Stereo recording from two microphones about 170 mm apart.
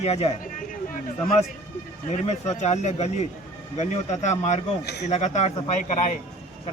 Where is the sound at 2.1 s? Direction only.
40° left (ahead or behind).